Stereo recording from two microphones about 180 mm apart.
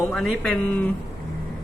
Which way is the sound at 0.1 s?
5° left (ahead or behind).